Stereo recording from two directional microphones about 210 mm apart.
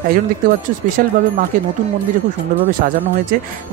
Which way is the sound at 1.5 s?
40° right (ahead or behind).